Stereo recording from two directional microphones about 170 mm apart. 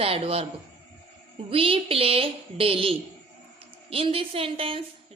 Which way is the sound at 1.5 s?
35° right (ahead or behind).